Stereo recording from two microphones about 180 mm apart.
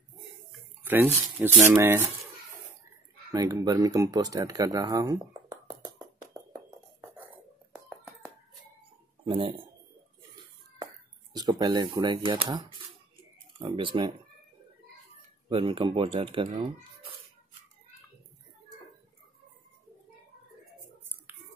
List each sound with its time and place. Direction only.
0.8 s speech: 10° right (ahead or behind)
3.3 s speech: 20° right (ahead or behind)
6.5 s chink: 15° right (ahead or behind)
9.2 s speech: 30° right (ahead or behind)
11.3 s speech: 20° right (ahead or behind)
15.4 s speech: 30° right (ahead or behind)